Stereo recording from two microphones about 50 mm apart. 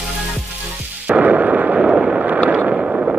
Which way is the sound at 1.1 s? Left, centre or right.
Right.